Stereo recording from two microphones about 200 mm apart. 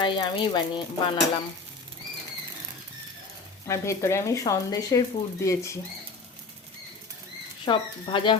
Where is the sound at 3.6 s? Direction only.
15° left (ahead or behind).